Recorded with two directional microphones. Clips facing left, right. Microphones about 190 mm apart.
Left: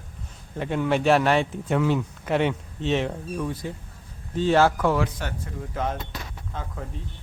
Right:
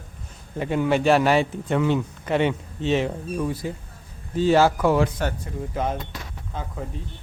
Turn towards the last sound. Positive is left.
turn(degrees=-10)  # may be behind; listen again after turning